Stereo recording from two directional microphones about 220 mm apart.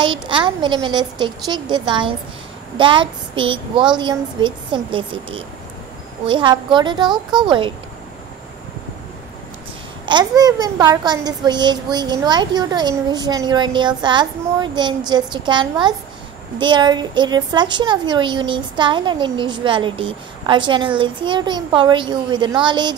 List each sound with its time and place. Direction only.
0.0 s a woman's voice: 20° right (ahead or behind)
10.0 s a woman's voice: 20° right (ahead or behind)